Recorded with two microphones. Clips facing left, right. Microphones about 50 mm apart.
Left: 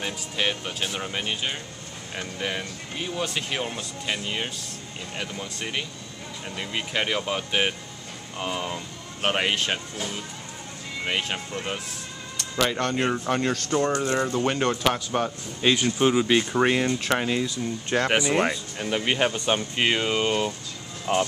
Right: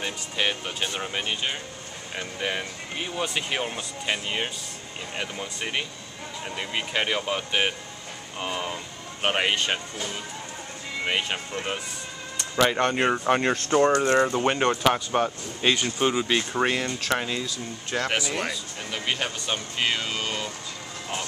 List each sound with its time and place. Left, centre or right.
0.0 s speech: centre
17.9 s speech: left
18.8 s speech: centre
21.1 s speech: left